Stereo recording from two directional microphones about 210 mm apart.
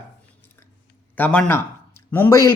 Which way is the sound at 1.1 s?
5° left (ahead or behind).